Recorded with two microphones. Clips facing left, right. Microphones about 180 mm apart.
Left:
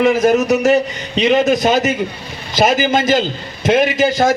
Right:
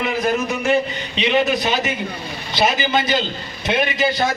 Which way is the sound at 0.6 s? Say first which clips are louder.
Left 5 dB; 40° left (ahead or behind).